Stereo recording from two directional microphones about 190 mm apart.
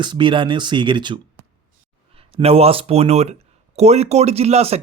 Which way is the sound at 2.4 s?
30° right (ahead or behind).